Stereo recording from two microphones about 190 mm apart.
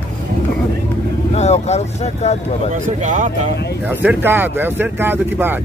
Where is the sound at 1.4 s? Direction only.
35° left (ahead or behind).